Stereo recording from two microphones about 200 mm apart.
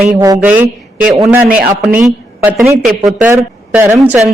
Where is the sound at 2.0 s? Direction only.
5° right (ahead or behind).